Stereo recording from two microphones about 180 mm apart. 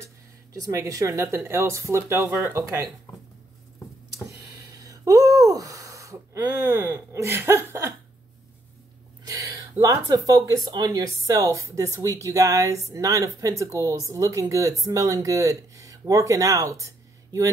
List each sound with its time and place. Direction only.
0.5 s speech: 20° right (ahead or behind)
4.6 s gasp: 20° right (ahead or behind)
9.2 s speech: 20° right (ahead or behind)